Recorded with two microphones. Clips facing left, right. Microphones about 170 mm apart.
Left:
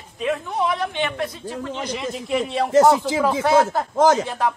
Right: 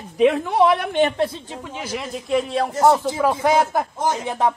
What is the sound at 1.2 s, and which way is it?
Speech, 30° right (ahead or behind).